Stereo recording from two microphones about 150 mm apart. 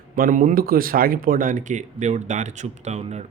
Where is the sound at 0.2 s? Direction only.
60° right (ahead or behind).